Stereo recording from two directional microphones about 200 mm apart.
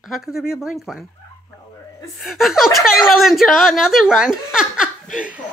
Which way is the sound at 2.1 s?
Centre (ahead or behind).